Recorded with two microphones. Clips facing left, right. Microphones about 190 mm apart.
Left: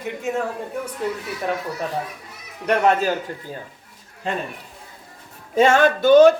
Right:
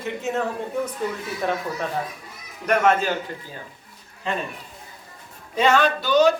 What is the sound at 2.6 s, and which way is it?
Speech, 35° left (ahead or behind).